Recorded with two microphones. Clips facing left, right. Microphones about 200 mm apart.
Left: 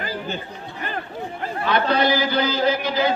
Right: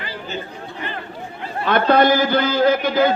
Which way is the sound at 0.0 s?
45° left (ahead or behind).